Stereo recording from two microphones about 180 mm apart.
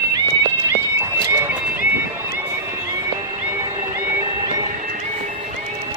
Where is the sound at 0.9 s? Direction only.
15° right (ahead or behind).